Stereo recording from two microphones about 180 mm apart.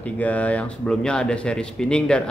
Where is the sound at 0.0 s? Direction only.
10° left (ahead or behind).